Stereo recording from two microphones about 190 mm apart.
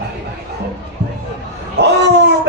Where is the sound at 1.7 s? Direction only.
60° right (ahead or behind).